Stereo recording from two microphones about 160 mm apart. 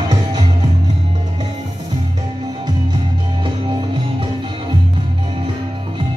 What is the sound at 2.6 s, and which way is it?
Music, 30° right (ahead or behind).